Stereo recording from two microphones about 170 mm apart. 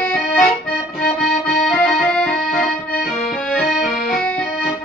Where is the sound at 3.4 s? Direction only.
Centre (ahead or behind).